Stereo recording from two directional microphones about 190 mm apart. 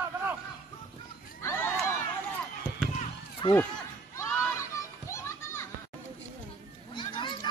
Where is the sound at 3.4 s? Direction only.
25° left (ahead or behind).